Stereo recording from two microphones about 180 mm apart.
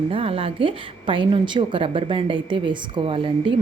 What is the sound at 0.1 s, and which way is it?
A woman's voice, 30° right (ahead or behind).